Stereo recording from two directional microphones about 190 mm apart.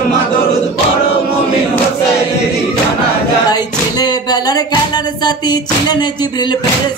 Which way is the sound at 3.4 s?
20° left (ahead or behind).